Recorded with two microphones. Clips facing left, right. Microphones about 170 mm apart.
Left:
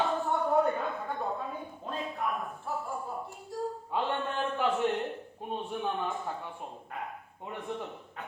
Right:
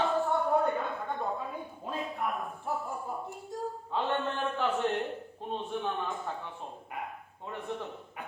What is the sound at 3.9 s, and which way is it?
Mantra, 10° left (ahead or behind).